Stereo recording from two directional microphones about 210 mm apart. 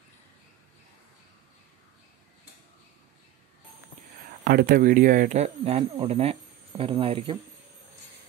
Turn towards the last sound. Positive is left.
turn(degrees=-25)  # may be behind; listen again after turning